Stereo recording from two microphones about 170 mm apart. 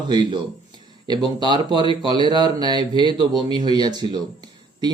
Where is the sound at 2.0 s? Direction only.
25° right (ahead or behind).